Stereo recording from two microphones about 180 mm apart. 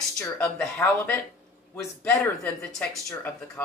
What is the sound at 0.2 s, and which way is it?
A woman's voice, 15° left (ahead or behind).